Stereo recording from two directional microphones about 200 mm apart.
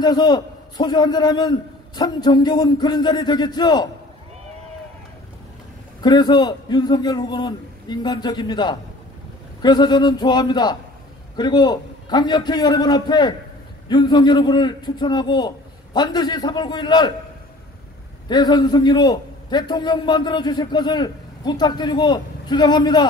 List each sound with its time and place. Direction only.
0.0 s a man's voice: 20° left (ahead or behind)
6.0 s a man's voice: 20° left (ahead or behind)
18.3 s a man's voice: 20° left (ahead or behind)